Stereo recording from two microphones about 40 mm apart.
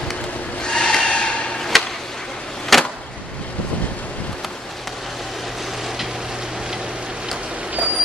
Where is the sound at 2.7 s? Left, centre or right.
Centre.